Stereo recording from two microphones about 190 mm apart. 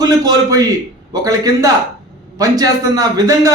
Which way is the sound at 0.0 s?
20° right (ahead or behind).